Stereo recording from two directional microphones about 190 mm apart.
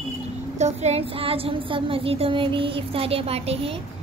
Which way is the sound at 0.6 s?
35° right (ahead or behind).